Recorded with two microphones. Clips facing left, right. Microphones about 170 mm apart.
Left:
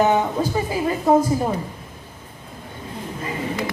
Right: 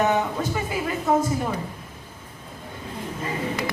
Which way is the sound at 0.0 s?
30° left (ahead or behind).